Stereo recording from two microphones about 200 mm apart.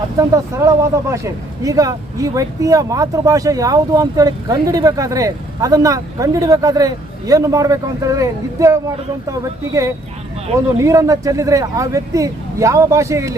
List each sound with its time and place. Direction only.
0.2 s speech: 15° right (ahead or behind)